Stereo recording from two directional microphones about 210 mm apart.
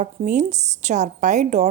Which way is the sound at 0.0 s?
35° right (ahead or behind).